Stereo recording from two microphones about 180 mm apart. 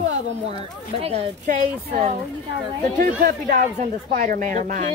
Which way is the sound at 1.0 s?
35° right (ahead or behind).